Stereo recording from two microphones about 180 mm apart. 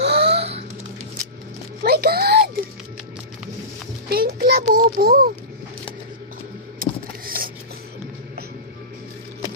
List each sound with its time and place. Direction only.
0.0 s music: 65° right (ahead or behind)
0.3 s music: 35° right (ahead or behind)
1.8 s a sound: 60° right (ahead or behind)
4.1 s a child's voice: 55° right (ahead or behind)
6.8 s vehicle: 50° right (ahead or behind)
7.3 s a sound: 50° right (ahead or behind)